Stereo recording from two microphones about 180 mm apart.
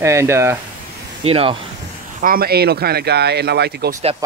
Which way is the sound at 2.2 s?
55° right (ahead or behind).